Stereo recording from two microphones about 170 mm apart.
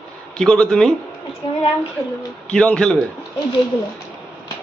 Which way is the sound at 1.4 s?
30° left (ahead or behind).